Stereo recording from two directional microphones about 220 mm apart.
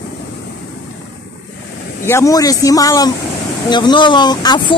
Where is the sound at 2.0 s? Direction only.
15° left (ahead or behind).